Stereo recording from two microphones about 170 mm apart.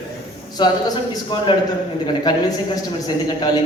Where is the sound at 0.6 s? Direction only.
25° left (ahead or behind).